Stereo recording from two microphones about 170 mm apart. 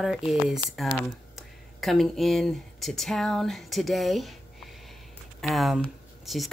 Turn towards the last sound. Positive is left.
turn(degrees=0)  # may be behind; listen again after turning